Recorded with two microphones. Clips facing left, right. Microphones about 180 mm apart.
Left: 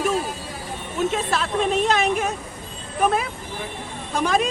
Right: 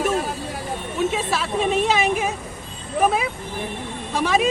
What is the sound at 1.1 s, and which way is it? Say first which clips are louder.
Speech: even; 5° right (ahead or behind).